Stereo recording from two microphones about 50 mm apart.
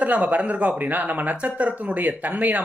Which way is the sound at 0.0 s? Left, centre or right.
Right.